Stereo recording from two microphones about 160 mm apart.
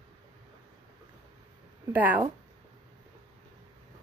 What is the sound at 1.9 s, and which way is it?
Speech, 10° right (ahead or behind).